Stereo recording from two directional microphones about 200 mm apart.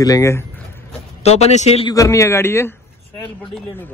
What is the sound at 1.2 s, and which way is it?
Speech, 30° left (ahead or behind).